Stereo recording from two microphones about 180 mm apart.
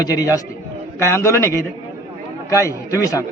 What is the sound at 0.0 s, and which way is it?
A man's voice, 20° left (ahead or behind).